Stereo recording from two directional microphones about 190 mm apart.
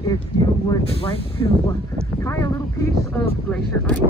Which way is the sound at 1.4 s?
25° left (ahead or behind).